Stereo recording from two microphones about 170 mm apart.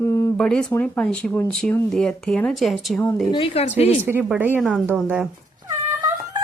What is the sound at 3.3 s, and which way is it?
Speech, 35° left (ahead or behind).